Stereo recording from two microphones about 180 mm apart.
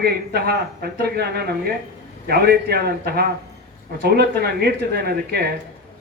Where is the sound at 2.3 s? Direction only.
60° right (ahead or behind).